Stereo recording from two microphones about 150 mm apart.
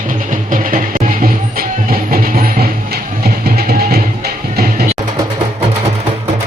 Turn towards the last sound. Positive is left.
turn(degrees=-90)